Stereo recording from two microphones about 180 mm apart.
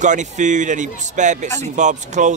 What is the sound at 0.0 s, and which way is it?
A man's voice, 45° right (ahead or behind).